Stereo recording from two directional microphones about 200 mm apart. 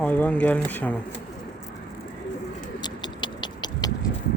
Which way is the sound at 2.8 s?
20° left (ahead or behind).